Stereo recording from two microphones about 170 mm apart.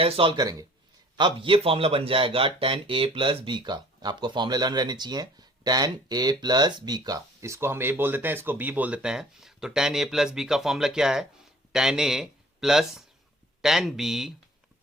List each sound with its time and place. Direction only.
0.0 s speech: 35° right (ahead or behind); by 14.3 s centre (ahead or behind)